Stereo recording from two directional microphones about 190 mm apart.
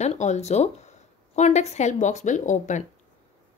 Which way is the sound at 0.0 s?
35° left (ahead or behind).